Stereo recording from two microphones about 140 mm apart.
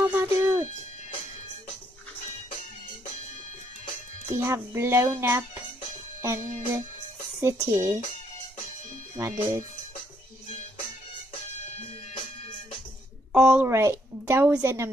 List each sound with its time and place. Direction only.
0.0 s music: 15° right (ahead or behind)
4.3 s speech: 20° right (ahead or behind)
9.1 s speech: 20° right (ahead or behind)
13.3 s a woman's voice: 10° right (ahead or behind)
13.7 s speech: 20° right (ahead or behind)